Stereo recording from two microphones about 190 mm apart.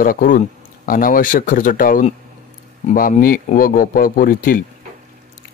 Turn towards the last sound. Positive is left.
turn(degrees=50)  # may be behind; listen again after turning